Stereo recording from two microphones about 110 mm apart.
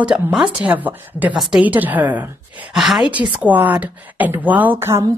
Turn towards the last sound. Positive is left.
turn(degrees=-20)  # may be behind; listen again after turning